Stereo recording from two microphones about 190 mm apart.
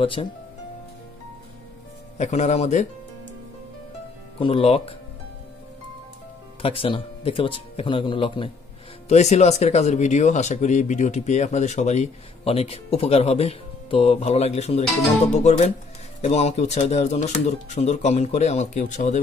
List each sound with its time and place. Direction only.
0.0 s speech: 30° left (ahead or behind)
2.1 s speech: 35° left (ahead or behind)
4.4 s speech: 30° left (ahead or behind)
6.6 s speech: 30° left (ahead or behind)